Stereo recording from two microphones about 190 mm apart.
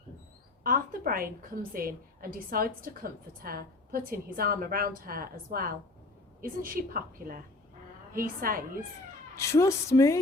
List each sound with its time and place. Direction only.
0.6 s a woman's voice: 50° right (ahead or behind)
9.3 s a woman's voice: 15° left (ahead or behind)